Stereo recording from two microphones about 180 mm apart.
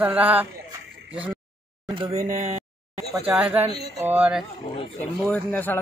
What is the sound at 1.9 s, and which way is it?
Speech, 25° right (ahead or behind).